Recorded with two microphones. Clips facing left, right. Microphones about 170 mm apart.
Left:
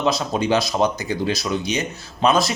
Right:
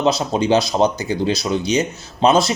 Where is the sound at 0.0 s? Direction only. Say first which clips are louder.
Right 3 dB; 30° right (ahead or behind).